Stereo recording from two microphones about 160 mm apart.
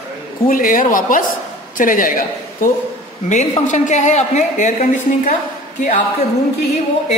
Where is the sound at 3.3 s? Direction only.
50° left (ahead or behind).